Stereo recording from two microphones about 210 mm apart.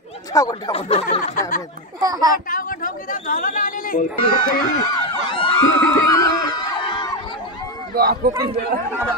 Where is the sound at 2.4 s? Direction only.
40° left (ahead or behind).